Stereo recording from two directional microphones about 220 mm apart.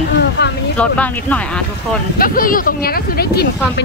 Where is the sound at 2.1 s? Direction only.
40° left (ahead or behind).